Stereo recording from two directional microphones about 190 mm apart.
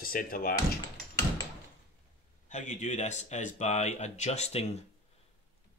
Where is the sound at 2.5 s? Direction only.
40° left (ahead or behind).